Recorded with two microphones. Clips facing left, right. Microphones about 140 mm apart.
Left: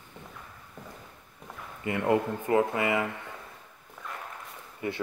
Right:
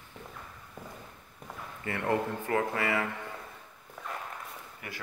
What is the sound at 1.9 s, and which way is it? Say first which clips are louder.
Speech: left 4 dB; 20° left (ahead or behind).